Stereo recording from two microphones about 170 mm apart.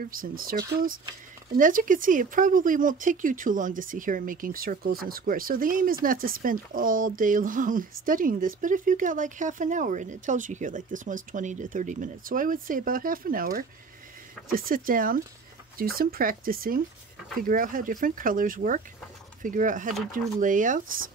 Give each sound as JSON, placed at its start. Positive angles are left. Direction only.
{"t": 0.0, "sound": "speech", "side_deg": -55}
{"t": 1.6, "sound": "speech", "side_deg": -50}